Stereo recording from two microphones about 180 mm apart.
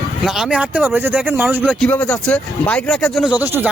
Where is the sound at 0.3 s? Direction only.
Centre (ahead or behind).